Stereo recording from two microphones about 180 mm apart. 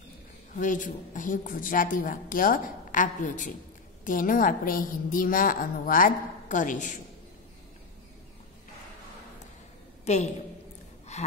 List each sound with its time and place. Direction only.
0.6 s speech: 45° left (ahead or behind)
10.1 s a woman's voice: 35° left (ahead or behind)
11.1 s gasp: 40° left (ahead or behind)